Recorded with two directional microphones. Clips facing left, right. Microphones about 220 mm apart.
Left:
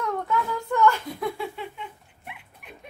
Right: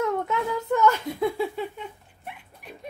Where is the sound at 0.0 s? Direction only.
20° right (ahead or behind).